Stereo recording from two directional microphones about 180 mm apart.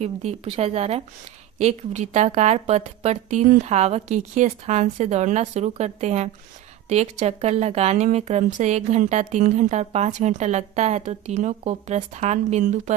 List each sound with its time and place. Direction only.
0.0 s speech: 35° right (ahead or behind)